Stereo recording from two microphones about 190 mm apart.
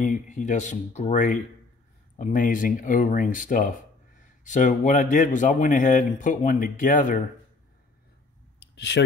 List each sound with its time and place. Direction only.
0.0 s speech: 40° left (ahead or behind)
8.7 s speech: 65° left (ahead or behind)